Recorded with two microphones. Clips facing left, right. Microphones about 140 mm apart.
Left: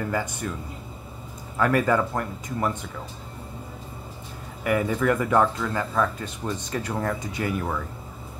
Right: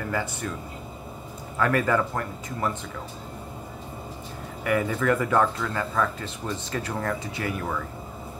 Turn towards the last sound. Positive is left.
turn(degrees=15)  # may be behind; listen again after turning